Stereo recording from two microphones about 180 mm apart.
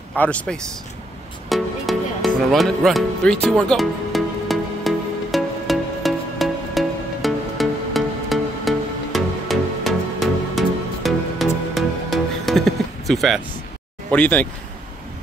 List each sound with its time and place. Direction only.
0.2 s speech: 5° left (ahead or behind)
1.5 s music: centre (ahead or behind)
14.1 s speech: 10° left (ahead or behind)